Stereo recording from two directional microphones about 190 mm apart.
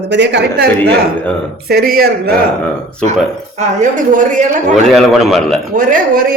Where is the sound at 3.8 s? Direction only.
40° right (ahead or behind).